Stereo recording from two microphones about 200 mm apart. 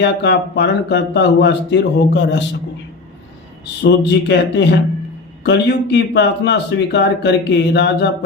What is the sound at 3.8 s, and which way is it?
Speech, 60° left (ahead or behind).